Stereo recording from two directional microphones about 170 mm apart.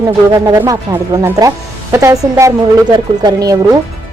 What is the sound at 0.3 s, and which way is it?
Speech, 15° right (ahead or behind).